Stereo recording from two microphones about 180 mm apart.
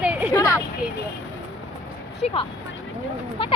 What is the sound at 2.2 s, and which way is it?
Speech, 30° left (ahead or behind).